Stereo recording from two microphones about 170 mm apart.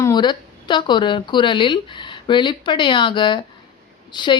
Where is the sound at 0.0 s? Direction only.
25° left (ahead or behind).